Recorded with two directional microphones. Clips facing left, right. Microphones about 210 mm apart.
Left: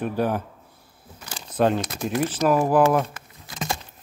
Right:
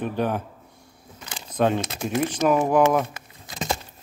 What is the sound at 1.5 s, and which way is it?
Speech, 10° left (ahead or behind).